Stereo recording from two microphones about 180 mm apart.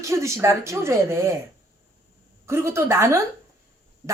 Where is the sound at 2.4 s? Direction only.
15° right (ahead or behind).